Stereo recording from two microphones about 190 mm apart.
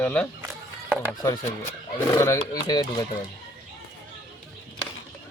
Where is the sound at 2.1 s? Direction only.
15° left (ahead or behind).